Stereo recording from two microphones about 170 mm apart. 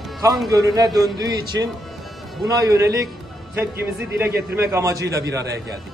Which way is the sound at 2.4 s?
20° right (ahead or behind).